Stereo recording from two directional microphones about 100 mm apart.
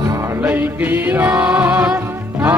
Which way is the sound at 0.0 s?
35° right (ahead or behind).